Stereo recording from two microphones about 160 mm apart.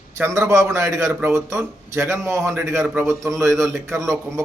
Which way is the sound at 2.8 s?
5° right (ahead or behind).